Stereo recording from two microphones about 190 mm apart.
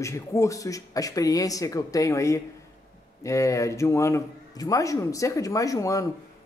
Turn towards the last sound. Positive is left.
turn(degrees=15)  # may be behind; listen again after turning